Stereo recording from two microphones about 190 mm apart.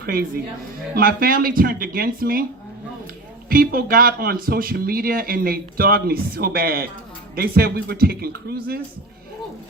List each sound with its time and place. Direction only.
0.0 s a woman's voice: 50° right (ahead or behind)
3.5 s speech: 50° right (ahead or behind)